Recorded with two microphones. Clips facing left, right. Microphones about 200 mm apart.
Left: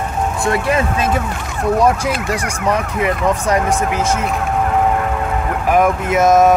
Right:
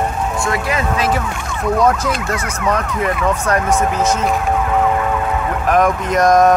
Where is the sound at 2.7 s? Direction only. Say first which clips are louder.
Left 1 dB; 10° left (ahead or behind).